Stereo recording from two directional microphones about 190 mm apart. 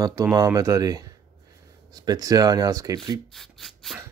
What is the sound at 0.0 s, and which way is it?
Speech, 15° right (ahead or behind).